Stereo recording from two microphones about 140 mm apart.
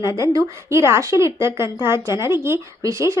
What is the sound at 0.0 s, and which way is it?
A woman's voice, 20° right (ahead or behind).